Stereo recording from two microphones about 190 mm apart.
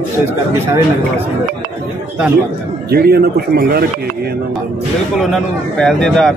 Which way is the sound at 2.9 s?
55° right (ahead or behind).